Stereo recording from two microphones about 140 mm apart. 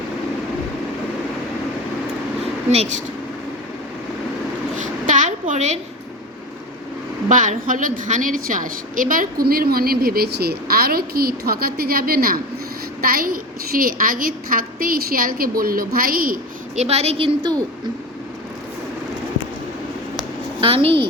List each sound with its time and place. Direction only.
2.6 s a woman's voice: 55° right (ahead or behind)
4.8 s a sound: 65° right (ahead or behind)
7.3 s a woman's voice: 65° right (ahead or behind); by 16.4 s 90° right
16.7 s a woman's voice: 50° right (ahead or behind)
20.6 s a woman's voice: 40° right (ahead or behind)